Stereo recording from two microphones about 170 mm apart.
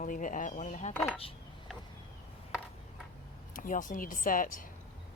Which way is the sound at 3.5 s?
50° left (ahead or behind).